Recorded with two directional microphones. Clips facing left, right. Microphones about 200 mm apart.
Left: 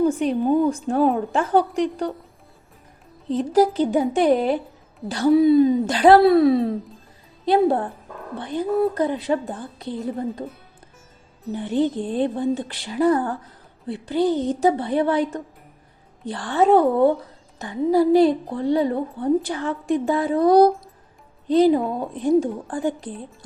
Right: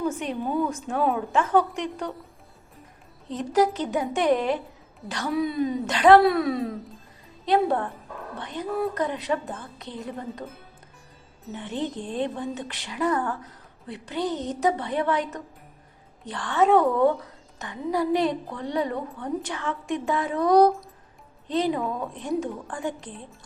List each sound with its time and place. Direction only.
0.0 s a woman's voice: 35° left (ahead or behind)
3.2 s a woman's voice: 30° left (ahead or behind)
11.5 s a woman's voice: 35° left (ahead or behind)